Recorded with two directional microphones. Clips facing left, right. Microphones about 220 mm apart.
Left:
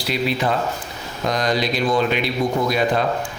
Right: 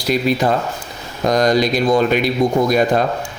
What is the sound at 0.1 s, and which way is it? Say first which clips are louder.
A man's voice: right 5 dB; 45° right (ahead or behind).